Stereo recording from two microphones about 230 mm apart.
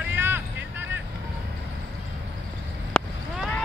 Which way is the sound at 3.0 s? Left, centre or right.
Centre.